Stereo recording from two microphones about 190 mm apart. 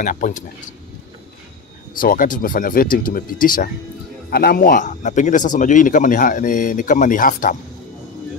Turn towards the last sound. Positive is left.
turn(degrees=45)  # may be behind; listen again after turning